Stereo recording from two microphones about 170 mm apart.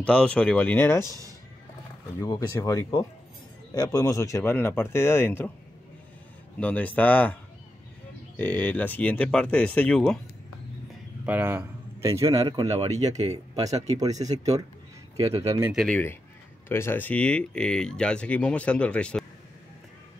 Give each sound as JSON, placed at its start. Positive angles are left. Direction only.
{"t": 0.0, "sound": "speech", "side_deg": 5}
{"t": 2.1, "sound": "speech", "side_deg": 20}
{"t": 6.6, "sound": "speech", "side_deg": 10}
{"t": 8.4, "sound": "speech", "side_deg": 10}
{"t": 11.2, "sound": "speech", "side_deg": -10}
{"t": 15.4, "sound": "speech", "side_deg": -20}
{"t": 15.7, "sound": "speech", "side_deg": 0}
{"t": 16.6, "sound": "speech", "side_deg": 15}